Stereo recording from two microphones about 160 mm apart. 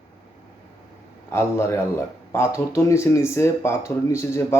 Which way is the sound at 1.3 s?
15° left (ahead or behind).